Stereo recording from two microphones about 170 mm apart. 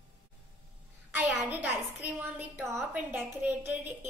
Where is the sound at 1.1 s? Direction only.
10° right (ahead or behind).